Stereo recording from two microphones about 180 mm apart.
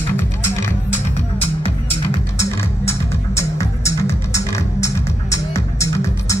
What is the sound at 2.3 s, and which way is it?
Music, 15° left (ahead or behind).